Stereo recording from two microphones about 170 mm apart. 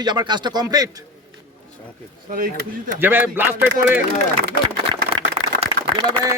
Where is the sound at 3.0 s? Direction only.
10° right (ahead or behind).